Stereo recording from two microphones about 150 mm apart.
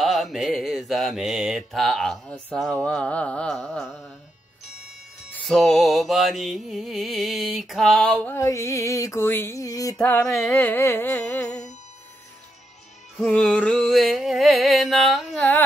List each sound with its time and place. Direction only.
0.0 s mantra: centre (ahead or behind)
5.4 s mantra: centre (ahead or behind)
8.4 s a sound: 20° left (ahead or behind)
10.4 s music: 15° left (ahead or behind)
13.2 s mantra: 5° left (ahead or behind)